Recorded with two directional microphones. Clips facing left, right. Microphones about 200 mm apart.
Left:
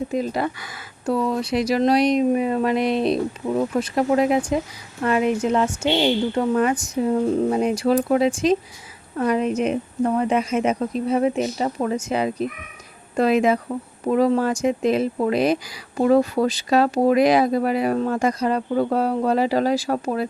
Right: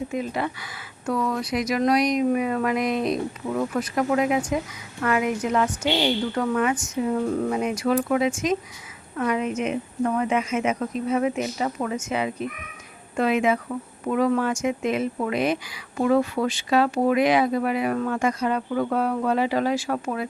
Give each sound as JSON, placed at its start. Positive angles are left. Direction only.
{"t": 0.1, "sound": "speech", "side_deg": 35}
{"t": 1.0, "sound": "speech", "side_deg": 25}